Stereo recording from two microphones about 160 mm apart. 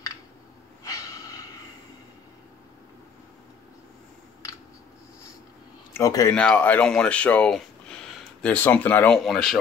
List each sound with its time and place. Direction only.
0.8 s snort: 20° left (ahead or behind)
5.9 s speech: 20° left (ahead or behind)
6.3 s speech: 10° left (ahead or behind)